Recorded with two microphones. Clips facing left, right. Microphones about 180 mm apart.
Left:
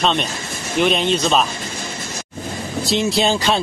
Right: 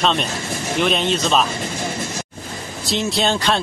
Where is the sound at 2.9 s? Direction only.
Centre (ahead or behind).